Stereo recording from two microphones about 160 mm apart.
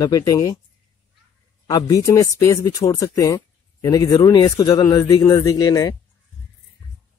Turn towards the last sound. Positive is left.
turn(degrees=20)  # may be behind; listen again after turning